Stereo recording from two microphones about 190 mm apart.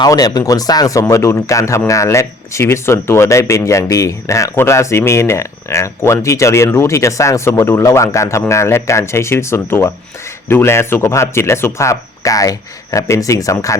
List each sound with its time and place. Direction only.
0.0 s speech: 20° left (ahead or behind)